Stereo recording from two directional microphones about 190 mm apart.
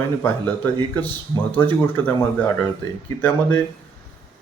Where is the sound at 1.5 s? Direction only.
10° left (ahead or behind).